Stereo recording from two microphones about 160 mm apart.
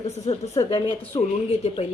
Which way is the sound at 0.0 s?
40° left (ahead or behind).